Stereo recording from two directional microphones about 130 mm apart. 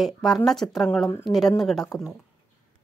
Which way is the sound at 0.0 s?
Centre (ahead or behind).